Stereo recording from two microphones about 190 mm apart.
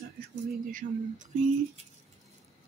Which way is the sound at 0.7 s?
40° right (ahead or behind).